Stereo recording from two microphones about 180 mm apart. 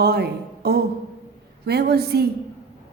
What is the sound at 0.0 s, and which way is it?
A woman's voice, 60° right (ahead or behind).